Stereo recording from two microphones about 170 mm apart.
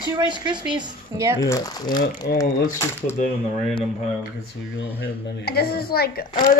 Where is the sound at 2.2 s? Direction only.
65° left (ahead or behind).